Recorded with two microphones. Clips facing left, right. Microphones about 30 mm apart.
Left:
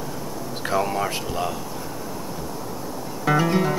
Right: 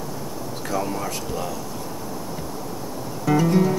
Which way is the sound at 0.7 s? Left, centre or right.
Left.